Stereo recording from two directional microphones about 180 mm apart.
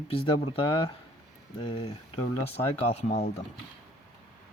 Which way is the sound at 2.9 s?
35° left (ahead or behind).